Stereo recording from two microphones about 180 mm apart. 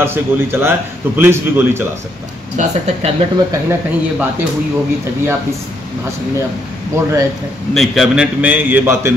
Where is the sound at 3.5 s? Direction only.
10° right (ahead or behind).